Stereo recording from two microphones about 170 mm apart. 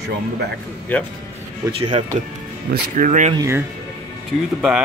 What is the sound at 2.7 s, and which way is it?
Speech, 50° right (ahead or behind).